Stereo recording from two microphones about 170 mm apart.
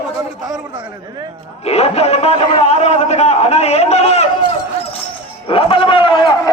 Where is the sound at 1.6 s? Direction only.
35° left (ahead or behind).